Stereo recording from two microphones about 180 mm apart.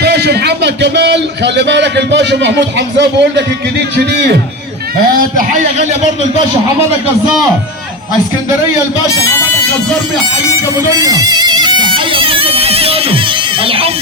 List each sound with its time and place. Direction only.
0.0 s a man's voice: 65° right (ahead or behind)
5.2 s a man's voice: 50° right (ahead or behind)
9.0 s speech: 15° left (ahead or behind)
10.8 s bagpipes: 20° right (ahead or behind)
13.7 s speech: 30° right (ahead or behind)